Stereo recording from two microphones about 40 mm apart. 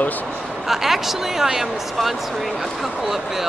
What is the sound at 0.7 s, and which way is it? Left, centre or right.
Speech, centre.